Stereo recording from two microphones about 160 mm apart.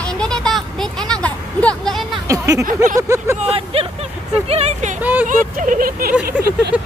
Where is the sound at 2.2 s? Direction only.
20° right (ahead or behind).